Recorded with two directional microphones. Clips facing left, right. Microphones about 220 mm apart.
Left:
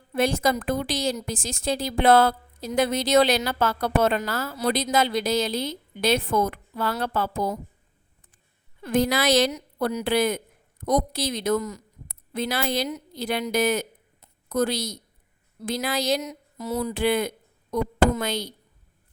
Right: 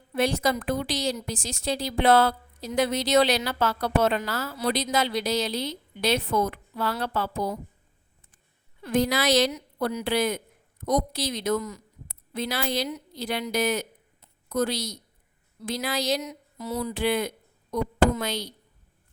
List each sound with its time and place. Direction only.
0.1 s a woman's voice: 50° left (ahead or behind)
8.8 s a woman's voice: 50° left (ahead or behind)